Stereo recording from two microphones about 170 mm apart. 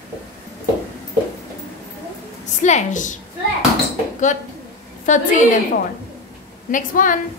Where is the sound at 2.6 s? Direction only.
45° left (ahead or behind).